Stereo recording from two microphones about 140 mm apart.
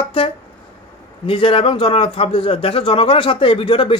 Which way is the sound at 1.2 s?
40° left (ahead or behind).